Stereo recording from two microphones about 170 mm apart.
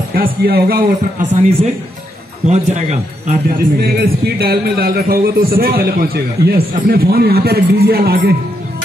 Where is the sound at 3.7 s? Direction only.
65° right (ahead or behind).